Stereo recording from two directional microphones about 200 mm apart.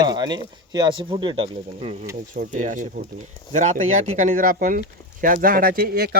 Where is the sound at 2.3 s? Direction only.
40° right (ahead or behind).